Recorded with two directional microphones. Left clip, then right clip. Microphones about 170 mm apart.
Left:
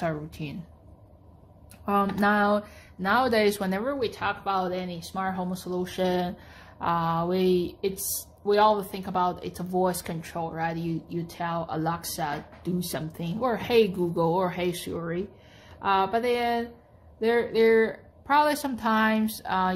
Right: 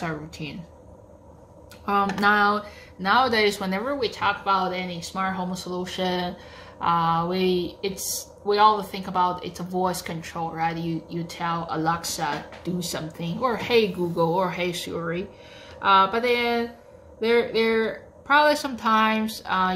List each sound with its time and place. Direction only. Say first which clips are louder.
0.0 s speech: even; 55° left (ahead or behind)
1.9 s speech: right 3 dB; 50° left (ahead or behind)